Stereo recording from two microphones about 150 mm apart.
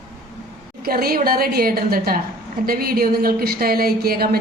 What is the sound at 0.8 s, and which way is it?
A woman's voice, 90° right.